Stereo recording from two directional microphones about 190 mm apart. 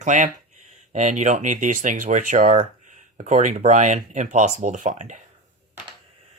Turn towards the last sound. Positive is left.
turn(degrees=-40)  # may be behind; listen again after turning